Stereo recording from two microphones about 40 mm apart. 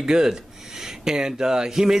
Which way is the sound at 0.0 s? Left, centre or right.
Centre.